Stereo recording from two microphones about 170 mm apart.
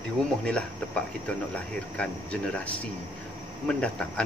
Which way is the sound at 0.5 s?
5° left (ahead or behind).